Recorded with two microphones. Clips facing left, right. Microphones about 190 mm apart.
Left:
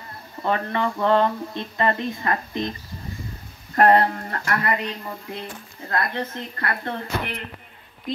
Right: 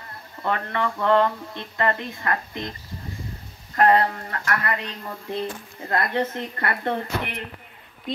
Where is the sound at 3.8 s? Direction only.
45° left (ahead or behind).